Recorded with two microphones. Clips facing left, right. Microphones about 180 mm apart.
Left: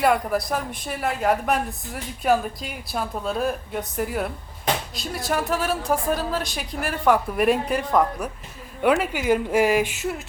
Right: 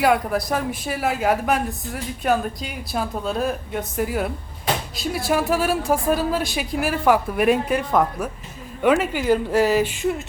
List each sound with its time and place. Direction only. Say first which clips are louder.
0.0 s speech: right 1 dB; centre (ahead or behind)